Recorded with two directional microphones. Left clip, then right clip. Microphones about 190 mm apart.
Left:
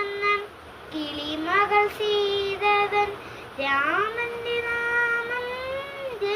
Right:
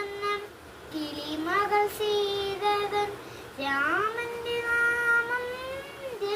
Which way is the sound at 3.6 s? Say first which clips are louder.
Left 5 dB; 30° right (ahead or behind).